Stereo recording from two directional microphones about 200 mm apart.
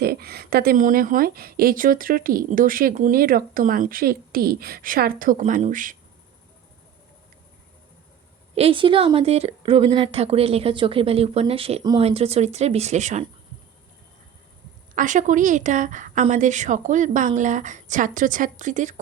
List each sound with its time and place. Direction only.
0.0 s a woman's voice: 50° right (ahead or behind)
8.5 s speech: 25° right (ahead or behind)
14.9 s a woman's voice: 40° right (ahead or behind)